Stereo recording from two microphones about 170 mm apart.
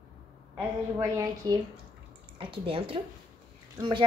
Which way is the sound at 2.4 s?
30° right (ahead or behind).